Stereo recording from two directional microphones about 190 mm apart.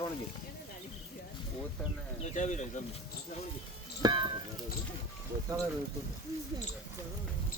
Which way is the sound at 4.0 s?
25° right (ahead or behind).